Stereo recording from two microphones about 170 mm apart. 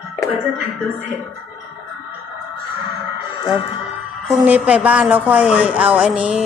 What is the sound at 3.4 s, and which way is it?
Speech, 35° left (ahead or behind).